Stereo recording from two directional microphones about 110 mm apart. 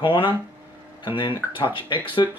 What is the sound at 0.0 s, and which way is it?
Speech, 50° left (ahead or behind).